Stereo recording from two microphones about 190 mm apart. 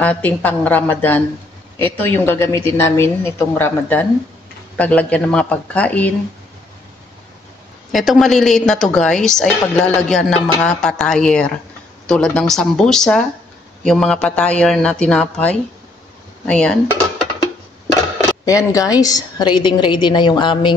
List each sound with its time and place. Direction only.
0.0 s a woman's voice: 10° left (ahead or behind)
7.9 s a woman's voice: centre (ahead or behind)
18.4 s a woman's voice: 15° left (ahead or behind)